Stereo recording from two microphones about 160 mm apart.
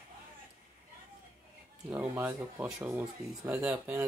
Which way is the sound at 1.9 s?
15° right (ahead or behind).